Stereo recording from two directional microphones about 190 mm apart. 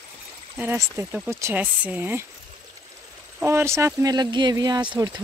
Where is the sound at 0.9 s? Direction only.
10° right (ahead or behind).